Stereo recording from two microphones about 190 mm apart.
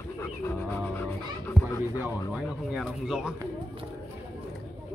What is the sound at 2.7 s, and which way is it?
Speech, centre (ahead or behind).